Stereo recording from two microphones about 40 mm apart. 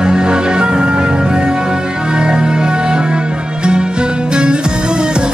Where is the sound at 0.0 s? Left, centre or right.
Right.